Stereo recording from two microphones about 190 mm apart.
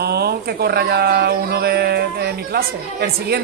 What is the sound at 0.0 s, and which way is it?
Speech, 55° right (ahead or behind).